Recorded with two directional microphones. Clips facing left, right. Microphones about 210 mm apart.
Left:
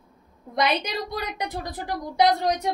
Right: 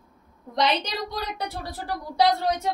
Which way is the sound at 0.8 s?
15° left (ahead or behind).